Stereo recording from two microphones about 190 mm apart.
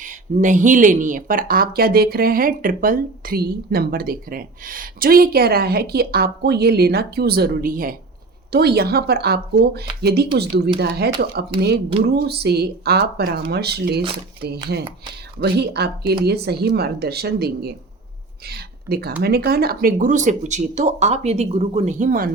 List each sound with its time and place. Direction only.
0.0 s speech: 40° right (ahead or behind)